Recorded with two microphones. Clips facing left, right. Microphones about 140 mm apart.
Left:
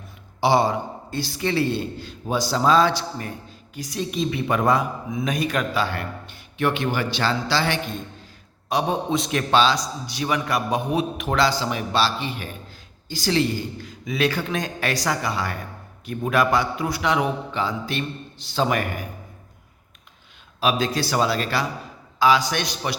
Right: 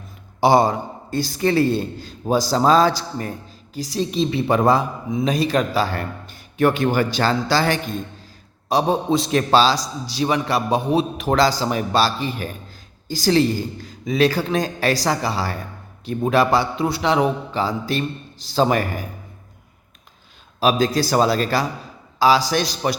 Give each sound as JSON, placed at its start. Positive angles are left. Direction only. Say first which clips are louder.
{"t": 0.3, "sound": "a man's voice", "louder": "right 4 dB", "side_deg": -45}
{"t": 20.6, "sound": "a man's voice", "louder": "right 4 dB", "side_deg": -40}